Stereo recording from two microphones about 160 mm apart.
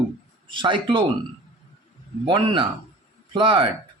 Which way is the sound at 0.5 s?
30° right (ahead or behind).